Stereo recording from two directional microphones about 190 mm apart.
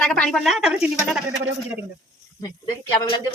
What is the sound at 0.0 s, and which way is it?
Speech, 5° left (ahead or behind).